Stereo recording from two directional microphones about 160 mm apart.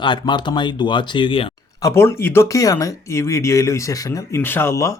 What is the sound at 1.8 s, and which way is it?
Speech, 20° left (ahead or behind).